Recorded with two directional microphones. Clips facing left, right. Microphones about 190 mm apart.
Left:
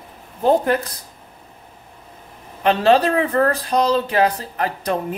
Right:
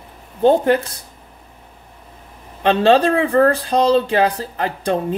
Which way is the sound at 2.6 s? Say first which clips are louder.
Right 2 dB; 30° right (ahead or behind).